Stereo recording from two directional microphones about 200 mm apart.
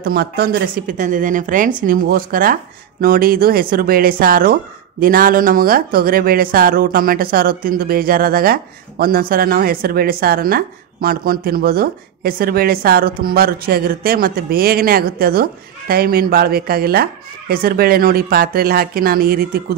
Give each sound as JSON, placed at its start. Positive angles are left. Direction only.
{"t": 0.0, "sound": "speech", "side_deg": -50}